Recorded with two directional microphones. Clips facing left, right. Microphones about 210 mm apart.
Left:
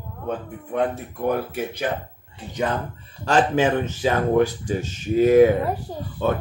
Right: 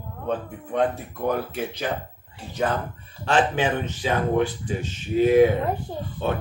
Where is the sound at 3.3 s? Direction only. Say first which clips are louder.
Left 3 dB; 40° left (ahead or behind).